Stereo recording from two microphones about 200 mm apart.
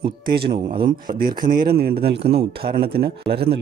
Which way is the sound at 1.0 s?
45° right (ahead or behind).